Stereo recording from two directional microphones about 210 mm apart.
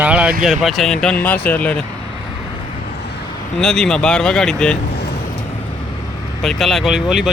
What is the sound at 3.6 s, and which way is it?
Speech, 5° left (ahead or behind).